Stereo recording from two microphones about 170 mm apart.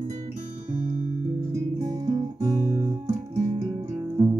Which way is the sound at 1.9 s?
20° right (ahead or behind).